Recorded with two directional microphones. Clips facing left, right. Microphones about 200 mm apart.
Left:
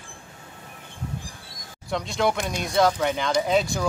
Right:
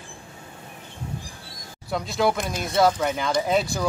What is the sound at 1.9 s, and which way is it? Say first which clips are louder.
Speech: right 1 dB; centre (ahead or behind).